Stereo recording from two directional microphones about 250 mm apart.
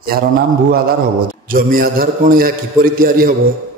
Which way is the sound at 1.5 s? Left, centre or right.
Right.